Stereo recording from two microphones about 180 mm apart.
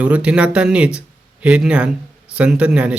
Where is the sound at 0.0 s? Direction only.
5° right (ahead or behind).